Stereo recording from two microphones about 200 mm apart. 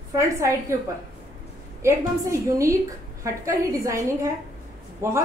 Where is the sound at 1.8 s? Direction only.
15° right (ahead or behind).